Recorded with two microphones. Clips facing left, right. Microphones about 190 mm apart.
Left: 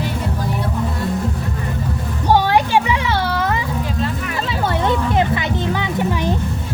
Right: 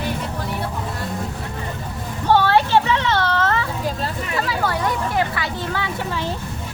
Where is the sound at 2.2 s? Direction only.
15° left (ahead or behind).